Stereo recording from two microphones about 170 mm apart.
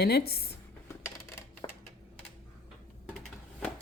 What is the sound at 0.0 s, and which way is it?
Speech, 70° left (ahead or behind).